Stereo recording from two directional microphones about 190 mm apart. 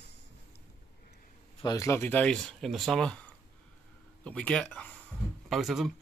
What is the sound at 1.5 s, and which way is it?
Speech, 20° left (ahead or behind).